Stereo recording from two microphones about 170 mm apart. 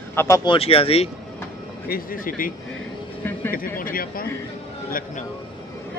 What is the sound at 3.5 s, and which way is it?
Speech, 55° left (ahead or behind).